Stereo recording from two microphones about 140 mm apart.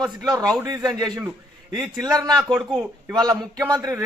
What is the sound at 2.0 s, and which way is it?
A man's voice, 25° right (ahead or behind).